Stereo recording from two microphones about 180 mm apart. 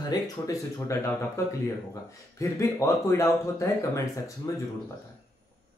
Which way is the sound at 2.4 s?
15° left (ahead or behind).